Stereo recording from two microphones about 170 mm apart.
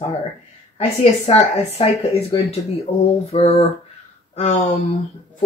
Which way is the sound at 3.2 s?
35° left (ahead or behind).